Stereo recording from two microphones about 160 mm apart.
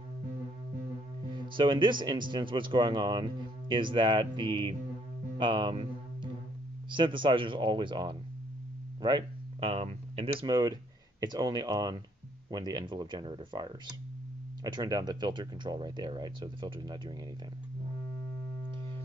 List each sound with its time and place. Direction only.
1.3 s speech: 30° right (ahead or behind)
6.9 s speech: 30° right (ahead or behind)